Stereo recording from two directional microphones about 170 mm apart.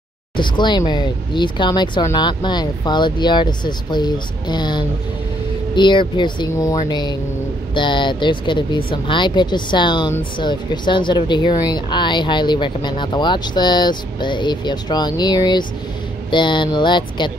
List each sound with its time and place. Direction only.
0.4 s speech: 25° left (ahead or behind)